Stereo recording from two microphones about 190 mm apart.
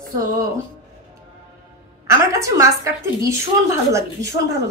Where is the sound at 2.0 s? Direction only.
15° right (ahead or behind).